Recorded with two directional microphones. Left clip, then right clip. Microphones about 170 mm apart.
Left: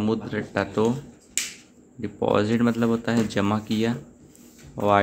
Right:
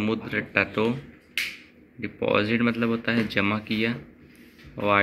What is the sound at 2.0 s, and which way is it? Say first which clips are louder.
A man's voice: left 1 dB; 20° left (ahead or behind).